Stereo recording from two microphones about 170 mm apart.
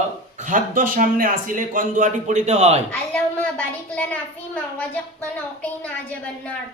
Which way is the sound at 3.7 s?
10° left (ahead or behind).